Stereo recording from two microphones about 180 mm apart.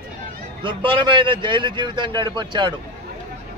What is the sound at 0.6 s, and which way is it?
Speech, 25° right (ahead or behind).